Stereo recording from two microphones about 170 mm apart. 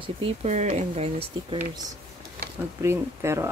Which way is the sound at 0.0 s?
35° right (ahead or behind).